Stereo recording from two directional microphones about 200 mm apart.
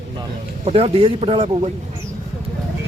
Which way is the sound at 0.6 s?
30° right (ahead or behind).